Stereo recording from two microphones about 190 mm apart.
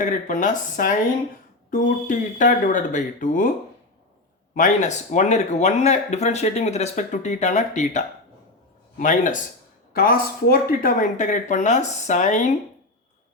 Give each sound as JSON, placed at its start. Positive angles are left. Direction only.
{"t": 0.0, "sound": "speech", "side_deg": 40}
{"t": 4.5, "sound": "speech", "side_deg": 40}